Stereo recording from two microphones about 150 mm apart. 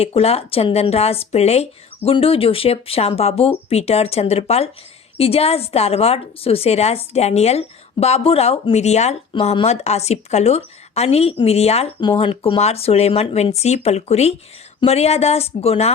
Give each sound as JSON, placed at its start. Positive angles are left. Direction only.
{"t": 0.0, "sound": "a woman's voice", "side_deg": 40}